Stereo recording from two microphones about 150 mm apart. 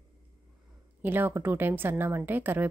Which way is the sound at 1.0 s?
15° right (ahead or behind).